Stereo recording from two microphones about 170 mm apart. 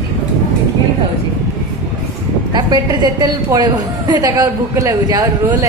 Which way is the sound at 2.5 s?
25° right (ahead or behind).